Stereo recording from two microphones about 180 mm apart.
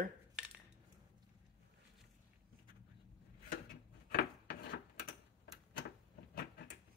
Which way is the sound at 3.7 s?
65° left (ahead or behind).